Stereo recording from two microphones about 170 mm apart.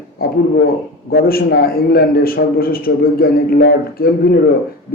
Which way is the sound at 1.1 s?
60° left (ahead or behind).